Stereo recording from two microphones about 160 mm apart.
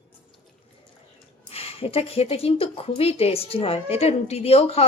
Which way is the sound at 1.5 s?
40° left (ahead or behind).